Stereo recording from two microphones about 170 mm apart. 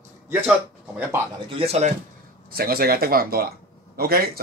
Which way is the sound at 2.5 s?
60° right (ahead or behind).